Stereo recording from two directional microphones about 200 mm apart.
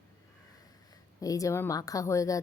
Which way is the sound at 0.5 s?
15° left (ahead or behind).